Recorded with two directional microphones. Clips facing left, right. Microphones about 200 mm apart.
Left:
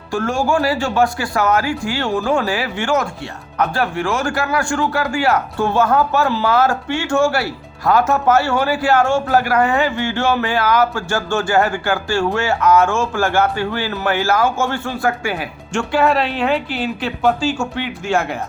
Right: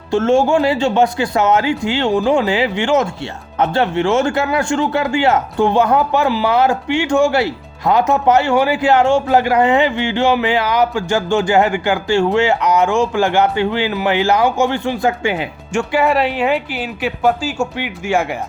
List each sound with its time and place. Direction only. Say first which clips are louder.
0.1 s speech: right 5 dB; 20° right (ahead or behind)